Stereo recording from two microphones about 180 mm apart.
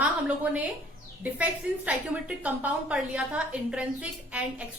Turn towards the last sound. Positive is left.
turn(degrees=-5)  # may be behind; listen again after turning